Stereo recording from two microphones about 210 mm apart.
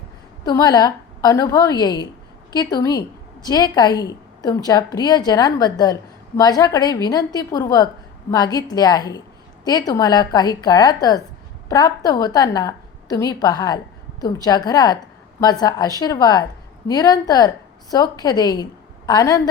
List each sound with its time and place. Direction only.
0.4 s a woman's voice: 20° left (ahead or behind)